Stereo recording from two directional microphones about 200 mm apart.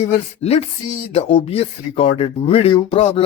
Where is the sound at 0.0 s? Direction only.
30° left (ahead or behind).